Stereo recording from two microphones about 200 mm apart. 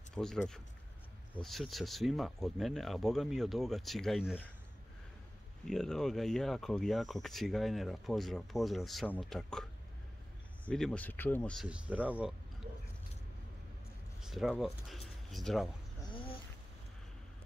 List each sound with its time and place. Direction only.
0.1 s speech: centre (ahead or behind)
5.7 s speech: 5° left (ahead or behind)
11.6 s speech: 5° right (ahead or behind)
14.2 s speech: centre (ahead or behind)
16.1 s a sound: 25° left (ahead or behind)